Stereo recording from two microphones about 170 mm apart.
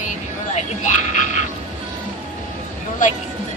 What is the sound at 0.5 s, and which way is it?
Speech, 45° left (ahead or behind).